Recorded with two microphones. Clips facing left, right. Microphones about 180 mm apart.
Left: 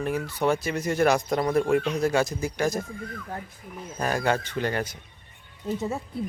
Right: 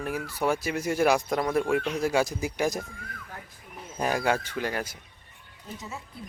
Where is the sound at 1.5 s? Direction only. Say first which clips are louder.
Left 3 dB; 5° right (ahead or behind).